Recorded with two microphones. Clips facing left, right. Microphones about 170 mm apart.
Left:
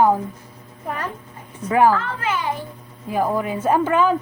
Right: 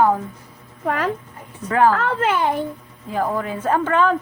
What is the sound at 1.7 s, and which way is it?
Speech, 15° left (ahead or behind).